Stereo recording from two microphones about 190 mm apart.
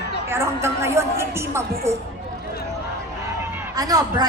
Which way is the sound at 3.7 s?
20° right (ahead or behind).